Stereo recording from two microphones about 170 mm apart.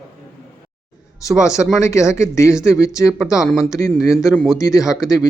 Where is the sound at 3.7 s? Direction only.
20° left (ahead or behind).